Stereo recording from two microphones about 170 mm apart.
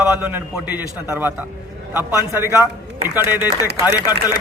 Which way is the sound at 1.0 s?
20° left (ahead or behind).